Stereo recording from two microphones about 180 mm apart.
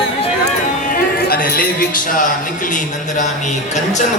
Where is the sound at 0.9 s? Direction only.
55° left (ahead or behind).